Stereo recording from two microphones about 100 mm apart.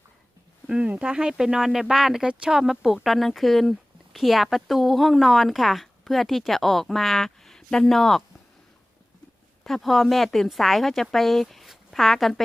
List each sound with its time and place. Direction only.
0.7 s speech: 10° right (ahead or behind)
9.6 s speech: centre (ahead or behind)